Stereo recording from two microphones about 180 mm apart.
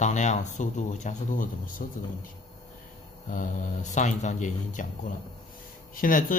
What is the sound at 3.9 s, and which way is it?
Speech, 40° left (ahead or behind).